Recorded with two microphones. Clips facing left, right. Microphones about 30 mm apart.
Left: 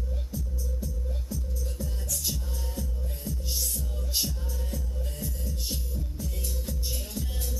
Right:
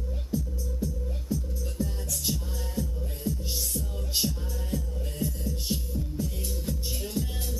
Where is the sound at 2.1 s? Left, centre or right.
Centre.